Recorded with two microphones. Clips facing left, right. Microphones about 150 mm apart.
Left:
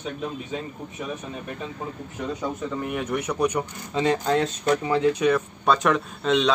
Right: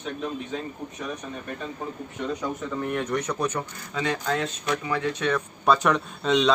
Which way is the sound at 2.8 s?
5° left (ahead or behind).